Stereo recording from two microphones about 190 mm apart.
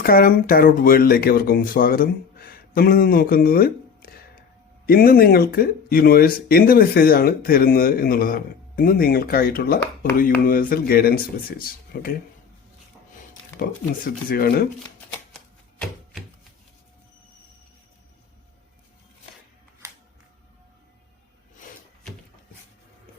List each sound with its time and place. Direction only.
0.0 s speech: 50° left (ahead or behind)
13.6 s speech: 50° left (ahead or behind)